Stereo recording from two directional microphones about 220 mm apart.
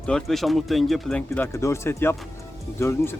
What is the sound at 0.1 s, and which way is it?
Speech, centre (ahead or behind).